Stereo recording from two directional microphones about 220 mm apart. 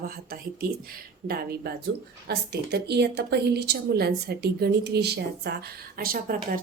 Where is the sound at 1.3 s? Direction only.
45° right (ahead or behind).